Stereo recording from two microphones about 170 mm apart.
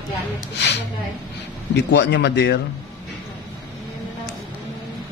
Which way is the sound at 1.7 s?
85° left.